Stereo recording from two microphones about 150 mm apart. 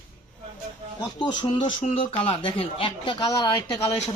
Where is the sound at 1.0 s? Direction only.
30° left (ahead or behind).